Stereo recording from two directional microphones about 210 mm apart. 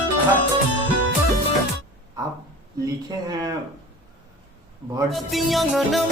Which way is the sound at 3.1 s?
20° right (ahead or behind).